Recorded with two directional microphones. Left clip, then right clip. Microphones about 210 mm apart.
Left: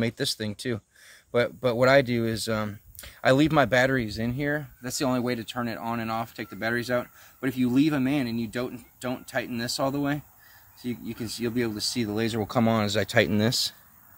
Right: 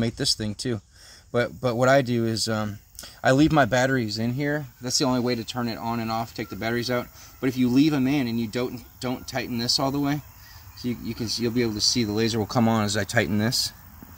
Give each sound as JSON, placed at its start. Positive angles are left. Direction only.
{"t": 0.0, "sound": "speech", "side_deg": 15}
{"t": 11.2, "sound": "speech", "side_deg": 5}